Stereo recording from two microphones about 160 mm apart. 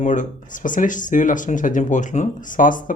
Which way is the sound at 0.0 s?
50° left (ahead or behind).